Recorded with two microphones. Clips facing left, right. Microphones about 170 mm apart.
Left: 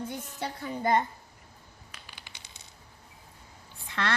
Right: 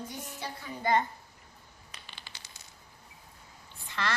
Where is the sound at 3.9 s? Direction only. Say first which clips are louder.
Left 2 dB; 65° left (ahead or behind).